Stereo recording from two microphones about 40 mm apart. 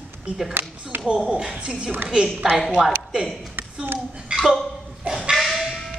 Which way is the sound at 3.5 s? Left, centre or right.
Right.